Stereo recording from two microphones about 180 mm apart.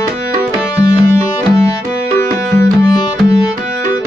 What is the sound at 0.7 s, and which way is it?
Music, 20° left (ahead or behind).